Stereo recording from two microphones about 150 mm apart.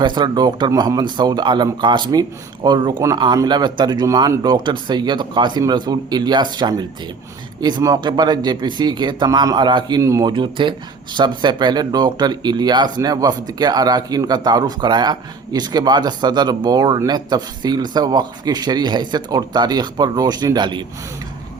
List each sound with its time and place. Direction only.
0.0 s speech: 30° right (ahead or behind)